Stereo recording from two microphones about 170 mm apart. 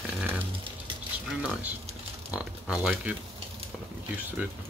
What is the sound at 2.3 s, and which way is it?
Speech, 5° right (ahead or behind).